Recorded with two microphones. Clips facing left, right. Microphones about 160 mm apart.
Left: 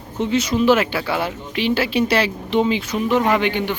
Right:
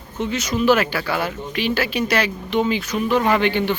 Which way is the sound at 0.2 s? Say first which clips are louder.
Left 3 dB; 30° left (ahead or behind).